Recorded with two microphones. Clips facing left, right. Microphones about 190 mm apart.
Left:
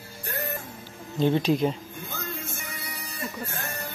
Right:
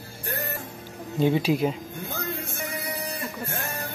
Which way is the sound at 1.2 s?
10° right (ahead or behind).